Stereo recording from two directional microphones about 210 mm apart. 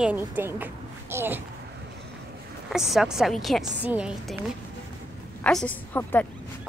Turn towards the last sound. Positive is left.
turn(degrees=10)  # may be behind; listen again after turning